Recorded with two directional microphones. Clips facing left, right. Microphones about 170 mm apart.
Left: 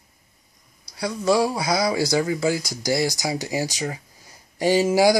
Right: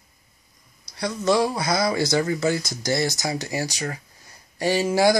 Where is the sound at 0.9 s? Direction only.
10° left (ahead or behind).